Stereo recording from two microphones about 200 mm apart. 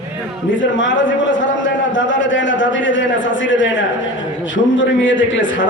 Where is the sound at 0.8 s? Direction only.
70° left (ahead or behind).